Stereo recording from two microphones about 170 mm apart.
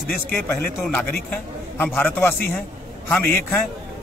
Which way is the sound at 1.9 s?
15° left (ahead or behind).